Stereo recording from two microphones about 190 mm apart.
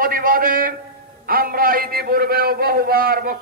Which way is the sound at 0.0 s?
50° right (ahead or behind).